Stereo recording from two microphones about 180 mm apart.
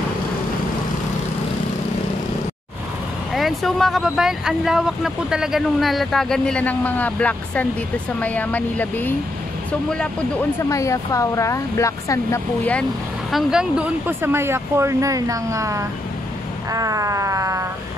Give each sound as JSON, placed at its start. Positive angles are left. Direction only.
{"t": 3.3, "sound": "speech", "side_deg": 0}
{"t": 10.7, "sound": "speech", "side_deg": 15}
{"t": 13.3, "sound": "speech", "side_deg": 0}